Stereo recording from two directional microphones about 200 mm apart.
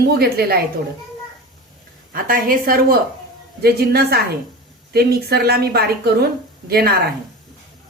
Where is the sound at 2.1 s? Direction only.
45° right (ahead or behind).